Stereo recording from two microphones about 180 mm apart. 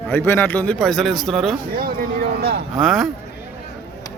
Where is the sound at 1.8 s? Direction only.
55° right (ahead or behind).